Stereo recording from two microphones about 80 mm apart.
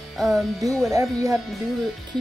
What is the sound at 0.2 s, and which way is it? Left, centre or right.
Speech, centre.